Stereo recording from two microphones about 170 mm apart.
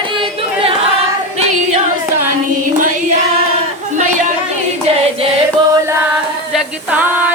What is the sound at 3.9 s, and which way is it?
Chatter, 45° right (ahead or behind).